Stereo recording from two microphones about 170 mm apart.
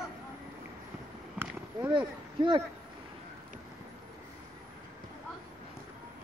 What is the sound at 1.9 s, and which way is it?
Speech, 25° right (ahead or behind).